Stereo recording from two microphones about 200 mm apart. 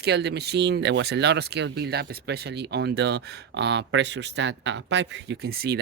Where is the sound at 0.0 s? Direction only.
55° right (ahead or behind).